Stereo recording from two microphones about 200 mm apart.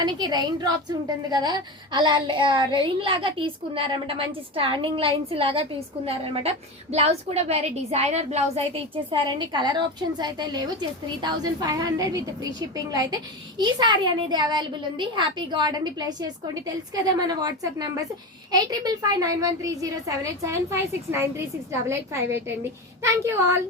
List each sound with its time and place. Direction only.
0.0 s a woman's voice: 20° right (ahead or behind)
9.0 s a woman's voice: 20° right (ahead or behind)